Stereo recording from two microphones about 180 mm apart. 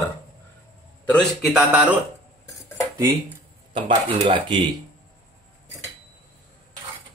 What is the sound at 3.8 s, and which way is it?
Speech, 35° right (ahead or behind).